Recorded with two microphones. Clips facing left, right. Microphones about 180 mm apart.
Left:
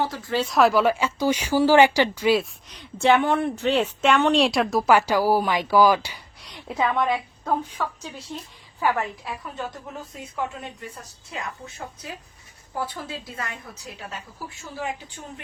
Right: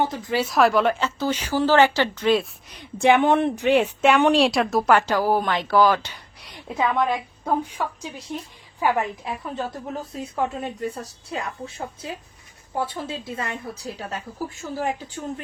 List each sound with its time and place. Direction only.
0.0 s a woman's voice: 20° right (ahead or behind)
0.4 s a woman's voice: centre (ahead or behind)
2.6 s a woman's voice: 10° right (ahead or behind); by 6.1 s 10° left (ahead or behind)
6.7 s a woman's voice: 10° right (ahead or behind)
9.6 s a woman's voice: 35° right (ahead or behind)